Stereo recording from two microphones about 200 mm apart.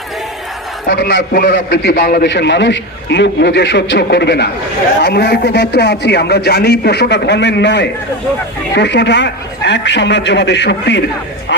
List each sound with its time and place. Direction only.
0.9 s a man's voice: 55° left (ahead or behind)